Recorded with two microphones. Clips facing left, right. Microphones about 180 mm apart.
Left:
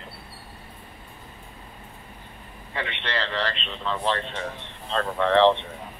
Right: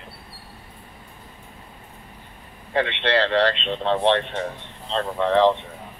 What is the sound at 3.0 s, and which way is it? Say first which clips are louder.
Speech: right 9 dB; 65° right (ahead or behind).